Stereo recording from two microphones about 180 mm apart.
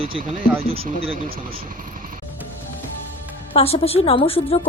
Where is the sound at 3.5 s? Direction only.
35° left (ahead or behind).